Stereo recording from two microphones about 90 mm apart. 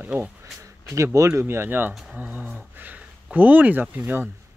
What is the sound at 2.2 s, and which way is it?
Speech, 15° right (ahead or behind).